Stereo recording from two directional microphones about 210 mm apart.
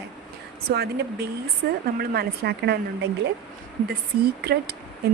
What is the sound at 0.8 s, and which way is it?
Speech, 50° right (ahead or behind).